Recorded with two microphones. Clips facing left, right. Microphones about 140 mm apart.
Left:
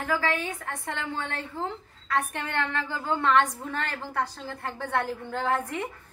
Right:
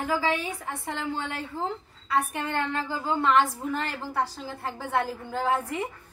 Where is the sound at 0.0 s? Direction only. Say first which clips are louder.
Right 1 dB; 10° right (ahead or behind).